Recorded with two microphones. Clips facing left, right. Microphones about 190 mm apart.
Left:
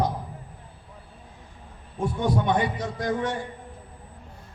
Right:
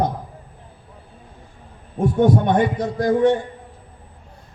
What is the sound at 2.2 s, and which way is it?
Speech, 50° right (ahead or behind).